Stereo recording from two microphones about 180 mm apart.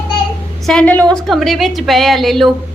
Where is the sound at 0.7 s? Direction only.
5° left (ahead or behind).